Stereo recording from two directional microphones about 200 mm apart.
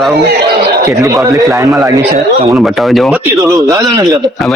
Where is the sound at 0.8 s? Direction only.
15° right (ahead or behind).